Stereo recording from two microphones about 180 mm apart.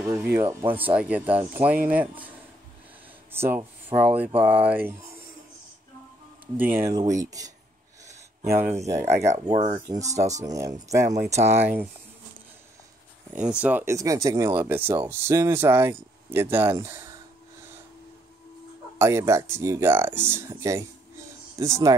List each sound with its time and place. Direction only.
0.1 s speech: 10° right (ahead or behind)
6.5 s speech: 10° right (ahead or behind)
8.5 s speech: 15° right (ahead or behind)
9.2 s speech: 40° right (ahead or behind)
10.3 s speech: 20° right (ahead or behind)
11.3 s speech: 35° right (ahead or behind)
11.6 s speech: 10° right (ahead or behind)
13.3 s speech: 5° right (ahead or behind)
18.9 s speech: 15° right (ahead or behind)